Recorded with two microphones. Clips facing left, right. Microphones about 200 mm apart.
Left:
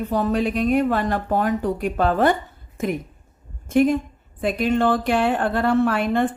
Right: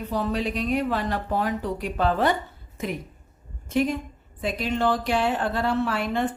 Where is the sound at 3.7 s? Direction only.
50° left (ahead or behind).